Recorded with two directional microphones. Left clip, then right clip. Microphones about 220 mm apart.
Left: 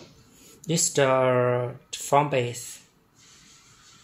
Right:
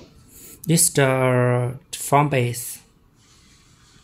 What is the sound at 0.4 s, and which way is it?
Speech, 25° right (ahead or behind).